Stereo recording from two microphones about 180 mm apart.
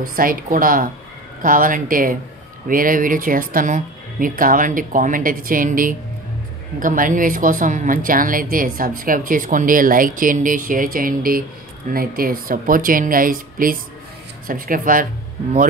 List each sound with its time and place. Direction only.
0.0 s a woman's voice: 50° right (ahead or behind)